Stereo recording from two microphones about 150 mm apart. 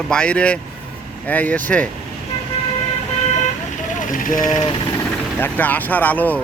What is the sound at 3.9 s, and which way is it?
Speech, 60° left (ahead or behind).